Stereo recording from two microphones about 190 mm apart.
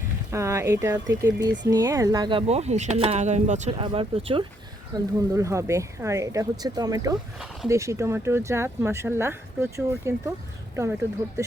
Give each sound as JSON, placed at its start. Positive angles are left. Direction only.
{"t": 0.3, "sound": "speech", "side_deg": -15}
{"t": 7.3, "sound": "speech", "side_deg": 0}
{"t": 7.7, "sound": "speech", "side_deg": -15}